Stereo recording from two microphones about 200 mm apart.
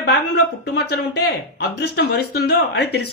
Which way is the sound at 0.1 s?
55° left (ahead or behind).